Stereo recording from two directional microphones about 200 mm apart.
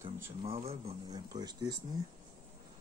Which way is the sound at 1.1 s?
20° right (ahead or behind).